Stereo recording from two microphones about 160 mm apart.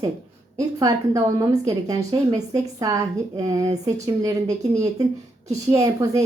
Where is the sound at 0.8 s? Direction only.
20° right (ahead or behind).